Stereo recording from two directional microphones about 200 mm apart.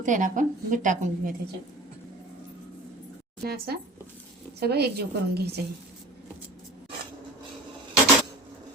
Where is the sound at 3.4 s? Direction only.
50° right (ahead or behind).